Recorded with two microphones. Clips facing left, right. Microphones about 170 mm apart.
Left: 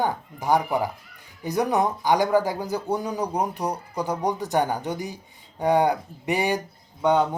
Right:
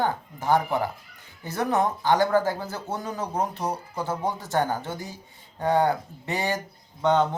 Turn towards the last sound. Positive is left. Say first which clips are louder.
# left 1 dB
turn(degrees=10)  # may be behind; listen again after turning